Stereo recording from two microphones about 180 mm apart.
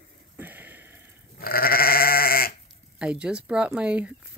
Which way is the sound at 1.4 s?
55° left (ahead or behind).